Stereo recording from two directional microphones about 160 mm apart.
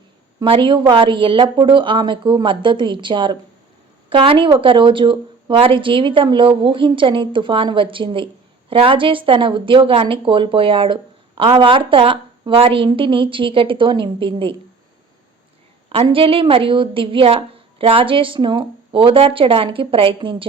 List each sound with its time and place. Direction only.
0.3 s a woman's voice: 30° right (ahead or behind)
15.9 s a woman's voice: 35° right (ahead or behind)